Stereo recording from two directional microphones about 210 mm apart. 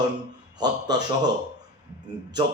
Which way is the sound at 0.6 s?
20° right (ahead or behind).